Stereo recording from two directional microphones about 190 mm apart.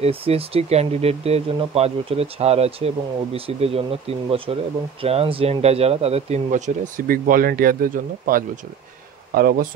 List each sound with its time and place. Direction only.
0.0 s speech: 30° right (ahead or behind); by 9.7 s 50° right (ahead or behind)